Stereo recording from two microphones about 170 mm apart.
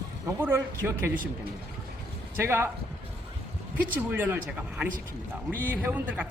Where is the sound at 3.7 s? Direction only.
10° right (ahead or behind).